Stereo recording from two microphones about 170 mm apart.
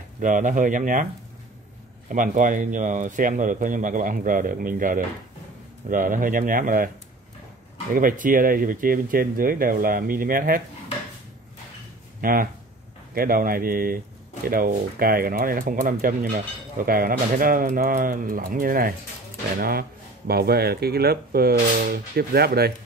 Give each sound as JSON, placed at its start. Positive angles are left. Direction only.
{"t": 0.2, "sound": "speech", "side_deg": -50}
{"t": 2.0, "sound": "speech", "side_deg": -50}
{"t": 7.9, "sound": "speech", "side_deg": -50}
{"t": 12.2, "sound": "speech", "side_deg": -55}